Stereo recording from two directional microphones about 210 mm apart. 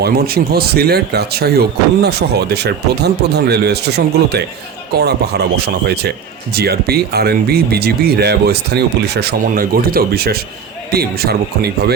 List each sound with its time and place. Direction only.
0.0 s speech: 50° right (ahead or behind)